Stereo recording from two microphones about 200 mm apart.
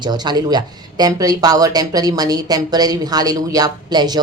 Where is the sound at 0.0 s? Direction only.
20° right (ahead or behind).